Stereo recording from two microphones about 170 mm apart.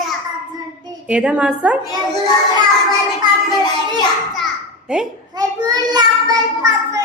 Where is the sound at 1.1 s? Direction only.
5° right (ahead or behind).